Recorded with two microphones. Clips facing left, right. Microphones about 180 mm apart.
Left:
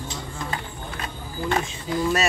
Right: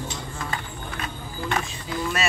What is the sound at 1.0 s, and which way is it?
Vehicle, 25° left (ahead or behind).